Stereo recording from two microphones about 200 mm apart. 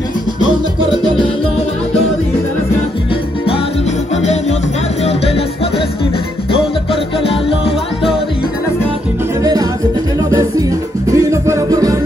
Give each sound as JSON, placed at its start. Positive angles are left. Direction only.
{"t": 4.2, "sound": "music", "side_deg": 35}
{"t": 7.2, "sound": "music", "side_deg": 25}
{"t": 9.4, "sound": "music", "side_deg": -15}
{"t": 11.1, "sound": "music", "side_deg": -15}